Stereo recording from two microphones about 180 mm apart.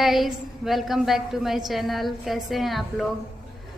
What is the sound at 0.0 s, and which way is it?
A woman's voice, centre (ahead or behind).